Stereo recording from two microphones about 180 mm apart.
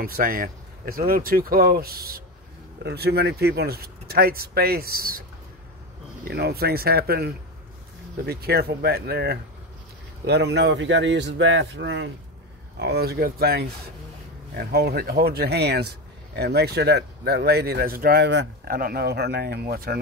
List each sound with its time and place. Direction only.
0.0 s speech: 55° right (ahead or behind)
6.2 s a man's voice: 60° right (ahead or behind); by 12.1 s 80° right
12.7 s speech: 65° right (ahead or behind)
18.8 s speech: 55° right (ahead or behind)